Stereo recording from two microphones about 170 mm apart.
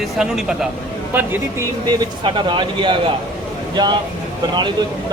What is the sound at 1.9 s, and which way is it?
Speech, 25° right (ahead or behind).